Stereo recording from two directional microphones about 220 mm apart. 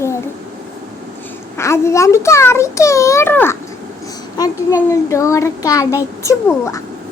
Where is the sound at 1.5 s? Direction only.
10° left (ahead or behind).